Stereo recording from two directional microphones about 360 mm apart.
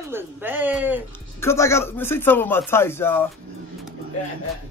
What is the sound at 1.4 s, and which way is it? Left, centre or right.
Speech, centre.